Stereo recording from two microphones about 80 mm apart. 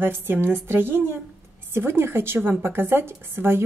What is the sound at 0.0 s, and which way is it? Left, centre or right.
A woman's voice, right.